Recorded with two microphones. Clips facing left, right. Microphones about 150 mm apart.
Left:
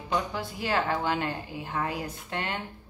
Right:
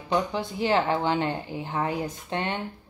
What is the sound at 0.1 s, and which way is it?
Speech, 20° right (ahead or behind).